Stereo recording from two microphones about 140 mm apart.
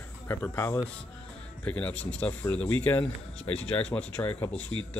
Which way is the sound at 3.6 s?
10° left (ahead or behind).